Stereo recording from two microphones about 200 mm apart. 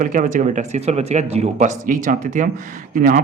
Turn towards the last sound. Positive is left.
turn(degrees=-45)  # may be behind; listen again after turning